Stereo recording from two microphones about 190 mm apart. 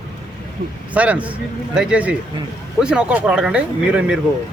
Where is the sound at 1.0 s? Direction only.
5° right (ahead or behind).